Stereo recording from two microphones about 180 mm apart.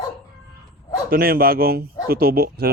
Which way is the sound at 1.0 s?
55° right (ahead or behind).